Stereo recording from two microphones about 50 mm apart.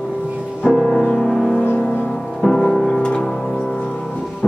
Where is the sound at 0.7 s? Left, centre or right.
Centre.